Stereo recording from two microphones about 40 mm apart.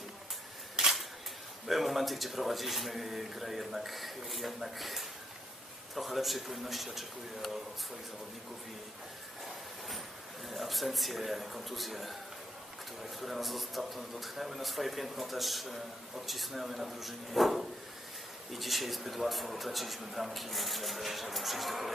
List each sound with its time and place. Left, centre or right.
0.8 s single-lens reflex camera: right
1.7 s speech: centre
10.5 s speech: centre